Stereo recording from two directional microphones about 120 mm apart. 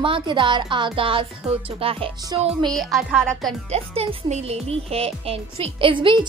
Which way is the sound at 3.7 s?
60° right (ahead or behind).